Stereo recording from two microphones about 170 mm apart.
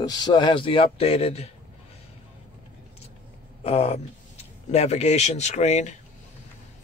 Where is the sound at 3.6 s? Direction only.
35° left (ahead or behind).